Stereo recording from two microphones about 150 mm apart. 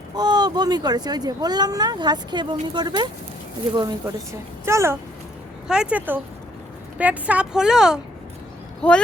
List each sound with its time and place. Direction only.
0.2 s speech: 25° right (ahead or behind)
5.6 s speech: 5° right (ahead or behind)
8.8 s speech: 5° left (ahead or behind)